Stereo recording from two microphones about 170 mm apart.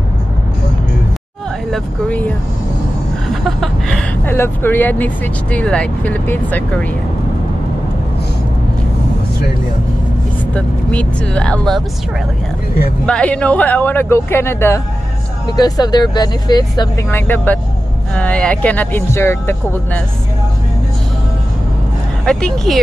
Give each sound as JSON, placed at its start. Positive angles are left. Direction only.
{"t": 1.7, "sound": "speech", "side_deg": 10}
{"t": 10.5, "sound": "speech", "side_deg": 10}
{"t": 13.0, "sound": "speech", "side_deg": 5}
{"t": 17.1, "sound": "speech", "side_deg": 10}
{"t": 22.2, "sound": "speech", "side_deg": 5}